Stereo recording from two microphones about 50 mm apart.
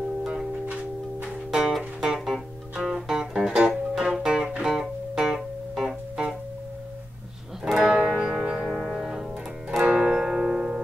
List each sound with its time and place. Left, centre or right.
1.2 s music: centre
2.1 s music: centre
2.7 s guitar: right
3.1 s music: centre
7.6 s music: centre
7.9 s music: centre
8.6 s music: centre